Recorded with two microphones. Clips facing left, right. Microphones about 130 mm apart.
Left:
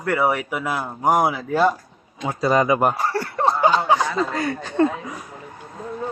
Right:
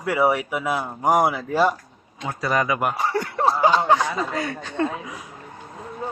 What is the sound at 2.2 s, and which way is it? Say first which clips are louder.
Speech: left 5 dB; 25° left (ahead or behind).